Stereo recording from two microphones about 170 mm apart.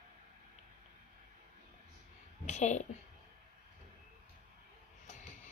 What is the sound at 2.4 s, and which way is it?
Speech, 45° left (ahead or behind).